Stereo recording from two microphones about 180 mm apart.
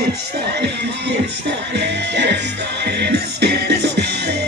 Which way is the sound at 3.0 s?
65° right (ahead or behind).